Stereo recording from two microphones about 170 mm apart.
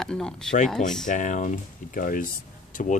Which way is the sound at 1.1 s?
50° left (ahead or behind).